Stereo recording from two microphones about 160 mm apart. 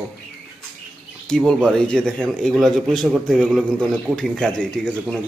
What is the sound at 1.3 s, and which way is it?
A man's voice, 5° left (ahead or behind).